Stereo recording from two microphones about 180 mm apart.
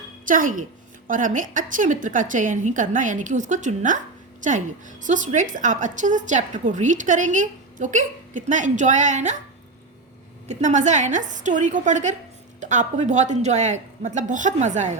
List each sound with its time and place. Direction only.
0.3 s a woman's voice: 45° right (ahead or behind)
10.5 s a woman's voice: 40° right (ahead or behind)